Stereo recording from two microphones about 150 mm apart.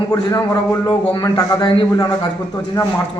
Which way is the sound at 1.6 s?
30° left (ahead or behind).